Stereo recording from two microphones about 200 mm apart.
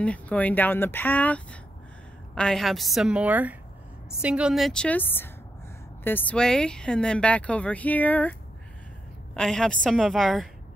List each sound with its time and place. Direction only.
0.0 s a woman's voice: 5° left (ahead or behind)